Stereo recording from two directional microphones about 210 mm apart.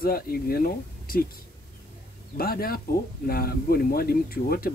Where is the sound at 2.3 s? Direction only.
45° left (ahead or behind).